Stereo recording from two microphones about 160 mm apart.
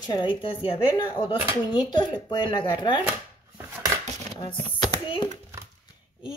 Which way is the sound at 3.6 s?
15° right (ahead or behind).